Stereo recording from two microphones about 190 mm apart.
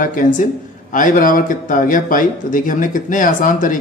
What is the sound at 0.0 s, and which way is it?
Speech, 45° left (ahead or behind).